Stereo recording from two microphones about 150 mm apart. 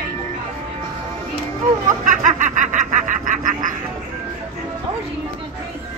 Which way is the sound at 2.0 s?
60° right (ahead or behind).